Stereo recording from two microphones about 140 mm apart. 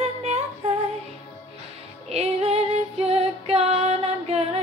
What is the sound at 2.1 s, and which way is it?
Female singing, 45° right (ahead or behind).